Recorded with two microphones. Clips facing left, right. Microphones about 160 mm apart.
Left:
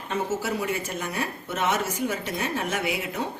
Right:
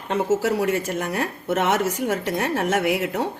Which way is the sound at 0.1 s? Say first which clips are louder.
Right 7 dB; 90° right.